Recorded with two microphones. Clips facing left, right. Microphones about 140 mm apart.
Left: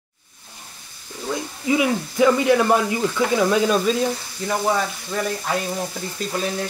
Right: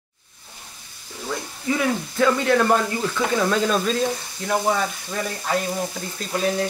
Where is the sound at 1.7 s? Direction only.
10° left (ahead or behind).